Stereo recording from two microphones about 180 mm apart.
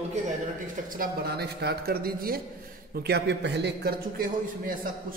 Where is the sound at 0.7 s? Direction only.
50° right (ahead or behind).